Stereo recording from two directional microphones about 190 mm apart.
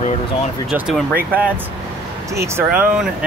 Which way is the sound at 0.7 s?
5° right (ahead or behind).